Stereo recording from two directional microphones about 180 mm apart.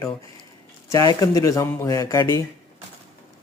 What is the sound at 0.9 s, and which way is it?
Speech, 20° left (ahead or behind).